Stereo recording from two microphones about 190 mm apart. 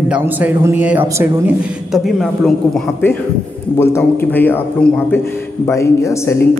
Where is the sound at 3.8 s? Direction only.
15° left (ahead or behind).